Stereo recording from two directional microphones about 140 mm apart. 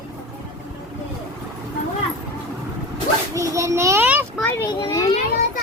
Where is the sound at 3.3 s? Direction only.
25° right (ahead or behind).